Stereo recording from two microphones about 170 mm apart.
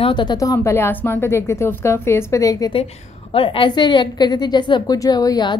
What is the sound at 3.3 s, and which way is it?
A woman's voice, 30° left (ahead or behind).